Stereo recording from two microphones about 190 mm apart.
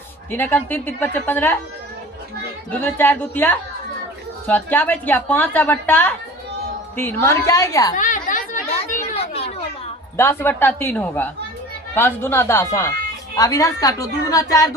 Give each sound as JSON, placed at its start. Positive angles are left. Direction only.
{"t": 0.3, "sound": "a woman's voice", "side_deg": 10}
{"t": 2.7, "sound": "a woman's voice", "side_deg": 10}
{"t": 7.9, "sound": "chatter", "side_deg": 40}
{"t": 10.2, "sound": "a woman's voice", "side_deg": 10}